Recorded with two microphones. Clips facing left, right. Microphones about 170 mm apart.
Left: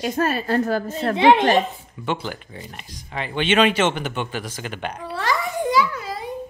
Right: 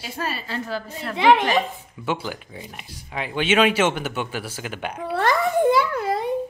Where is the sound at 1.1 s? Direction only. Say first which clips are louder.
Left 2 dB; 25° left (ahead or behind).